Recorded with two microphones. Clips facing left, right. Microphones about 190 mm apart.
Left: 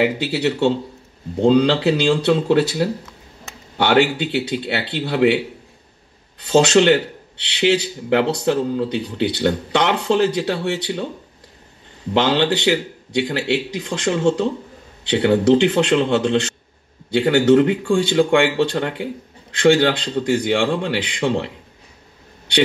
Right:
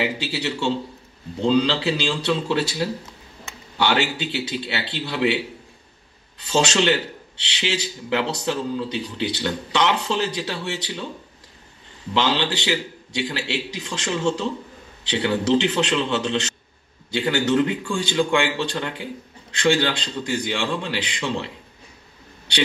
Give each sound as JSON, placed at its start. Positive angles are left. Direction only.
{"t": 0.0, "sound": "a man's voice", "side_deg": 55}
{"t": 6.4, "sound": "a man's voice", "side_deg": 60}
{"t": 12.1, "sound": "a man's voice", "side_deg": 55}